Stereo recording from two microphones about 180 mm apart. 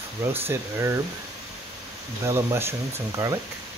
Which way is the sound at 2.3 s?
15° right (ahead or behind).